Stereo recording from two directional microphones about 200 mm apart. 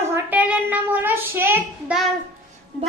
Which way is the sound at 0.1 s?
10° right (ahead or behind).